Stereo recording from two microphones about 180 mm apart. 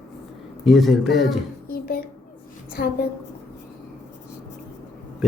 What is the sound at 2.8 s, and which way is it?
Speech, 55° left (ahead or behind).